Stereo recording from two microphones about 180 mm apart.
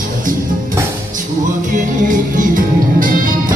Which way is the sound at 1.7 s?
45° right (ahead or behind).